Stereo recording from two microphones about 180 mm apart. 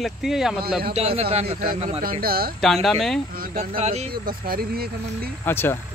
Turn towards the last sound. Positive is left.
turn(degrees=10)  # may be behind; listen again after turning